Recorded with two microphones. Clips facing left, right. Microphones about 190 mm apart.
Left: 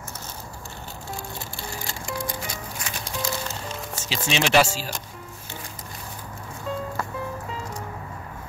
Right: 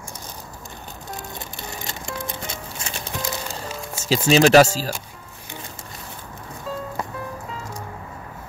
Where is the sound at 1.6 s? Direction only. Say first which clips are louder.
Right 1 dB; 20° right (ahead or behind).